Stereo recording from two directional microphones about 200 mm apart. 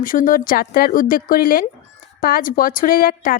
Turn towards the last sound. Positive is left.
turn(degrees=45)  # may be behind; listen again after turning